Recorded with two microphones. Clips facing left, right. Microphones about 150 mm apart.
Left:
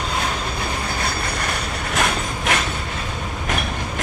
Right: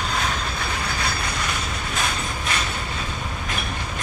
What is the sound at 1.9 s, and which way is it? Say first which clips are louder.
Train: left 6 dB; 70° left (ahead or behind).